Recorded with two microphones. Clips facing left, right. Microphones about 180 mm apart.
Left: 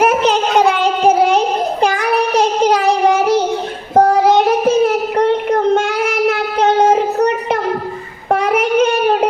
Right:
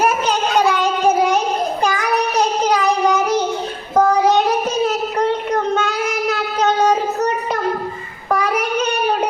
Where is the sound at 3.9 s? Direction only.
50° left (ahead or behind).